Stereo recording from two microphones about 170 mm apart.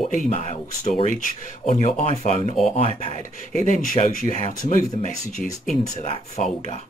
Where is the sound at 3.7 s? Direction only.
55° left (ahead or behind).